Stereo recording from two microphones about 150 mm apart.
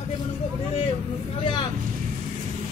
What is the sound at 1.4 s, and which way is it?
Vehicle, 30° left (ahead or behind).